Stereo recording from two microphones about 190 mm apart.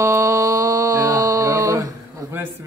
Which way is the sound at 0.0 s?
15° right (ahead or behind).